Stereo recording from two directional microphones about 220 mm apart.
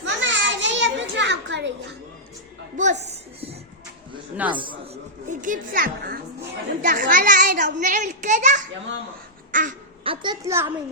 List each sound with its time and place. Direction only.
0.0 s children playing: 55° right (ahead or behind)
2.7 s a sound: 30° right (ahead or behind)
4.4 s a child's voice: 5° right (ahead or behind)
5.3 s a child's voice: 35° right (ahead or behind)
9.5 s babbling: 35° right (ahead or behind)
10.0 s a child's voice: 25° right (ahead or behind)
10.4 s a child's voice: 10° right (ahead or behind)